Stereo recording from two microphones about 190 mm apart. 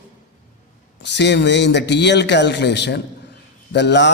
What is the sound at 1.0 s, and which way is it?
A man's voice, 65° left (ahead or behind).